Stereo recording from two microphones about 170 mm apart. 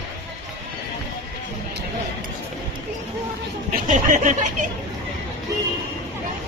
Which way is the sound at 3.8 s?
50° right (ahead or behind).